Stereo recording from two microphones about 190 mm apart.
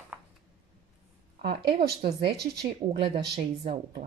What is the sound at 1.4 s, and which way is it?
Speech, 60° right (ahead or behind).